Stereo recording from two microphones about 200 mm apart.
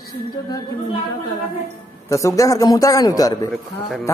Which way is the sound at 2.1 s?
15° left (ahead or behind).